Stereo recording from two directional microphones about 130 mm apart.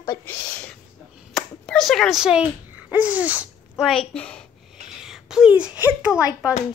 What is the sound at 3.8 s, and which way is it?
Speech, 5° left (ahead or behind).